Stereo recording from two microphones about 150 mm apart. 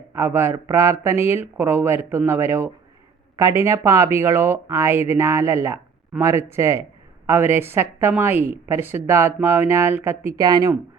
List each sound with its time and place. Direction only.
0.1 s speech: 15° right (ahead or behind)